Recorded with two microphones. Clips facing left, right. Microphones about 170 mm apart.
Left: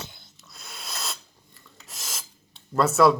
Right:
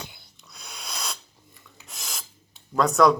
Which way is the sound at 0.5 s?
Centre (ahead or behind).